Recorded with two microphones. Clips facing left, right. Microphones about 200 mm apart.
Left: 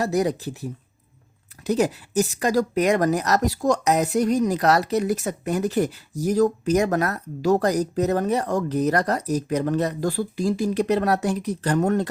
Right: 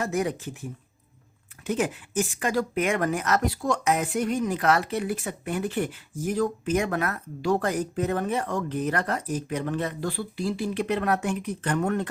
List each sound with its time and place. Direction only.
0.0 s speech: 35° left (ahead or behind)